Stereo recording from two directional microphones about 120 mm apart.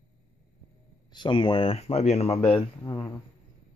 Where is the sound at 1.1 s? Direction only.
40° left (ahead or behind); by 2.6 s 55° left (ahead or behind).